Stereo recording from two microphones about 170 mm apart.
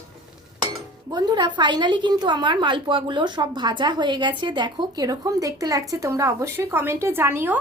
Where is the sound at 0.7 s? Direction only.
25° right (ahead or behind).